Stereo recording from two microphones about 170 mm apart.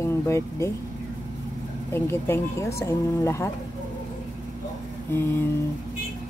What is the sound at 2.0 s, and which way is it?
Speech, 15° left (ahead or behind).